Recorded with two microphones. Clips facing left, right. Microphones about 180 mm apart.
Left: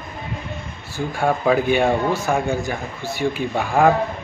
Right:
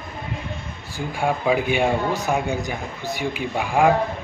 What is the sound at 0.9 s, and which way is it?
Speech, 10° right (ahead or behind).